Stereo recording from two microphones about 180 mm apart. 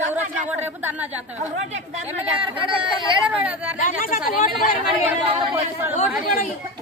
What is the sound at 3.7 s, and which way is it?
Speech, 50° left (ahead or behind).